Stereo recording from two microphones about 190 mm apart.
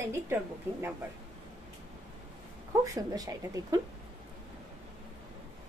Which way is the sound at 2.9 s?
20° right (ahead or behind).